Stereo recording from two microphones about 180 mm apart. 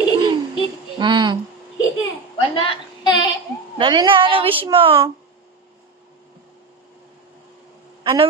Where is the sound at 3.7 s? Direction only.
25° right (ahead or behind).